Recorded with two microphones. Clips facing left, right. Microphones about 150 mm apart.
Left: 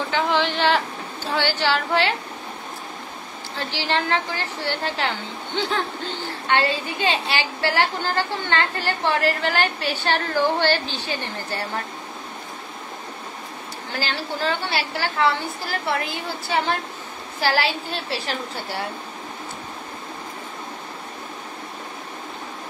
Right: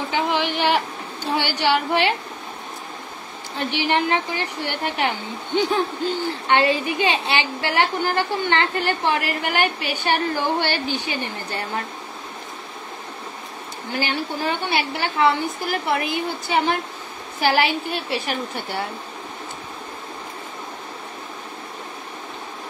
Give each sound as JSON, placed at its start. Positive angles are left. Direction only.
{"t": 0.1, "sound": "a woman's voice", "side_deg": -15}
{"t": 3.5, "sound": "a woman's voice", "side_deg": -15}
{"t": 6.5, "sound": "a woman's voice", "side_deg": -20}
{"t": 13.9, "sound": "a woman's voice", "side_deg": -15}